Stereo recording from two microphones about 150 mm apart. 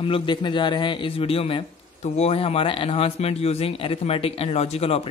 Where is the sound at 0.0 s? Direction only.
35° left (ahead or behind).